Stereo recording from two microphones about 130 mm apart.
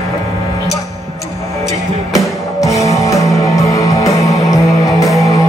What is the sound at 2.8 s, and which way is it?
Music, 25° left (ahead or behind).